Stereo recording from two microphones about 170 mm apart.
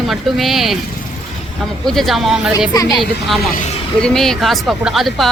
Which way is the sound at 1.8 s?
Centre (ahead or behind).